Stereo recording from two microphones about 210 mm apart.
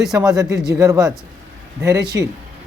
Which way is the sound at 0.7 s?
15° right (ahead or behind).